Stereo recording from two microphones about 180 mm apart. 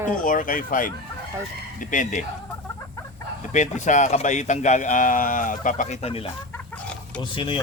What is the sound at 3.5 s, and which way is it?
Speech, 40° left (ahead or behind).